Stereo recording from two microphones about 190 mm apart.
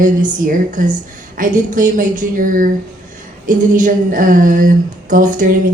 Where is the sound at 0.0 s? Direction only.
45° right (ahead or behind).